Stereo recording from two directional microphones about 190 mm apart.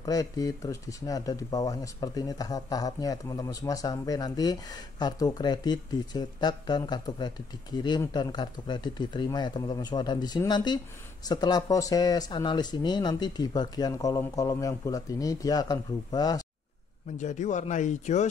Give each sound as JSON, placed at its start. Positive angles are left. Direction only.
{"t": 0.0, "sound": "speech", "side_deg": 20}
{"t": 17.2, "sound": "speech", "side_deg": 40}